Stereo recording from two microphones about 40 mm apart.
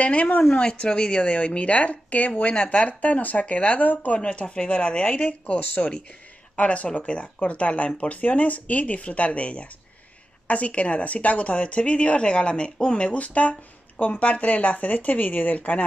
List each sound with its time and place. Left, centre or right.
0.0 s speech: left
0.4 s a woman's voice: left
2.5 s a woman's voice: left
2.9 s speech: left
4.2 s a woman's voice: left
14.3 s speech: left